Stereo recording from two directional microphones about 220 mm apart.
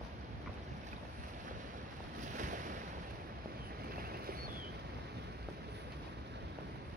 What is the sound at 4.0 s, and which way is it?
Boat, 45° right (ahead or behind).